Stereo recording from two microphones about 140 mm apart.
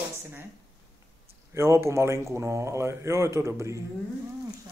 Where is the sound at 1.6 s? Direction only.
20° right (ahead or behind).